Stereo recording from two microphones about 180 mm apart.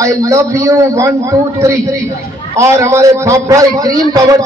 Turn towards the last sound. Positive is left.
turn(degrees=-20)  # may be behind; listen again after turning